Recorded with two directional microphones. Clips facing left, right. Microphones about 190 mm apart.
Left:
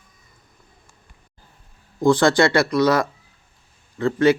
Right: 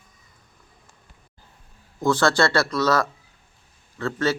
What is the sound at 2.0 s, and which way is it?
A man's voice, 15° left (ahead or behind).